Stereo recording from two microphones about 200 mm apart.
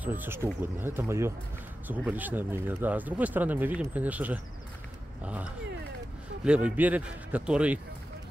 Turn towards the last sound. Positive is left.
turn(degrees=-5)  # may be behind; listen again after turning